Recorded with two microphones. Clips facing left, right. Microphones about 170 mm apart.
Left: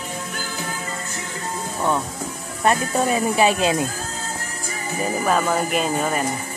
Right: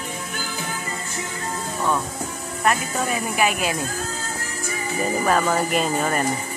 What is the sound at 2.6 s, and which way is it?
Speech, 30° left (ahead or behind).